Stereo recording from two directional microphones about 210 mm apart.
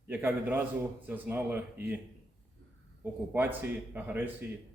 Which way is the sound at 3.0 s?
10° right (ahead or behind).